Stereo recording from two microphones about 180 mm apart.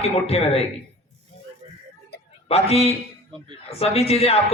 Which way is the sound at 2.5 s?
35° left (ahead or behind).